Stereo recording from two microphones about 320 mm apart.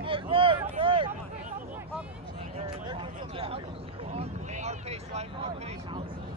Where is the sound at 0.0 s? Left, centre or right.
Centre.